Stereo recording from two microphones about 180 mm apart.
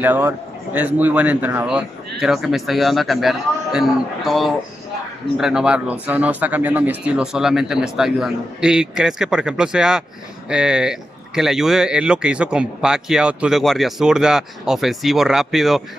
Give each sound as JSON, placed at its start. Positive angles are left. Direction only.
{"t": 0.0, "sound": "a man's voice", "side_deg": -10}